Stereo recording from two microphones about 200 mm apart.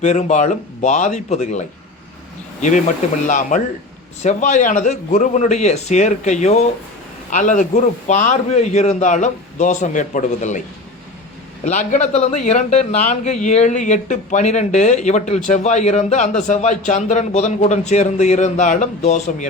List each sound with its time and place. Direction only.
0.0 s a man's voice: 35° left (ahead or behind)
11.6 s a man's voice: 40° left (ahead or behind)